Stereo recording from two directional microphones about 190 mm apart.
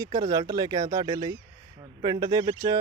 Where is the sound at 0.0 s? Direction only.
20° right (ahead or behind).